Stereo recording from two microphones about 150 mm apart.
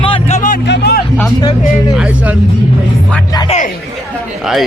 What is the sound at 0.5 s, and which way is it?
Music, 90° left.